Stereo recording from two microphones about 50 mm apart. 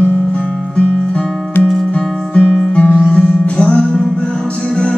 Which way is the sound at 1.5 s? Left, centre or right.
Left.